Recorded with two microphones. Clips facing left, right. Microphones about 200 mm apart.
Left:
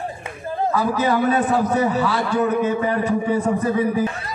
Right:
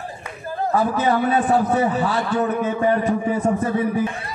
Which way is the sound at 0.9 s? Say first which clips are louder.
Even; 40° left (ahead or behind).